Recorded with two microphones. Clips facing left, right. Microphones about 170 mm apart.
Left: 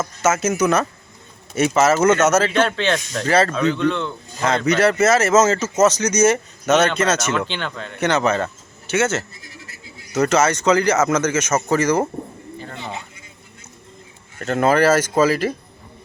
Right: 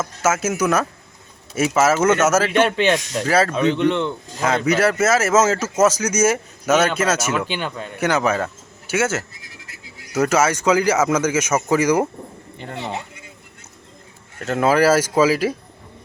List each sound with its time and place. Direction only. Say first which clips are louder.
0.0 s speech: left 1 dB; 5° right (ahead or behind)
3.5 s speech: right 1 dB; 15° right (ahead or behind)
4.4 s speech: left 1 dB; 5° right (ahead or behind)
14.4 s speech: even; 5° right (ahead or behind)